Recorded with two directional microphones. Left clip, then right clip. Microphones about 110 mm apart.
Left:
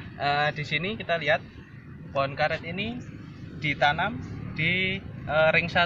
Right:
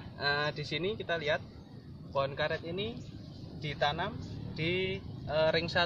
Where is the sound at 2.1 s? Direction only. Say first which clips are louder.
Left 6 dB; 15° right (ahead or behind).